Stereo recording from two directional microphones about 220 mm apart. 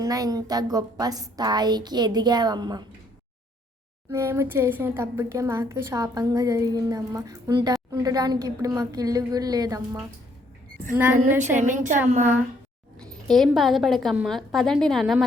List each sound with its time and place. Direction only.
0.0 s a woman's voice: 15° right (ahead or behind)
4.1 s a woman's voice: 10° right (ahead or behind)
11.3 s a woman's voice: 10° right (ahead or behind)
11.5 s a woman's voice: 35° right (ahead or behind)
13.2 s a woman's voice: centre (ahead or behind)